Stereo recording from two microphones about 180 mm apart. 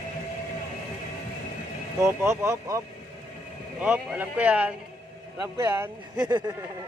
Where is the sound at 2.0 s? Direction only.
15° right (ahead or behind).